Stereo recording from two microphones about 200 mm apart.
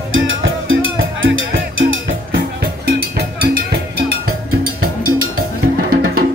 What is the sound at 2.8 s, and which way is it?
Cowbell, 50° right (ahead or behind).